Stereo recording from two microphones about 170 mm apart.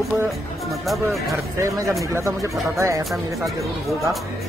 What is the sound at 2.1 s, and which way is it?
Speech, 20° right (ahead or behind).